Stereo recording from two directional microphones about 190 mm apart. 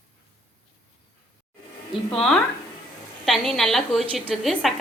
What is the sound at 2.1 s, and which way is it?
A woman's voice, 5° left (ahead or behind).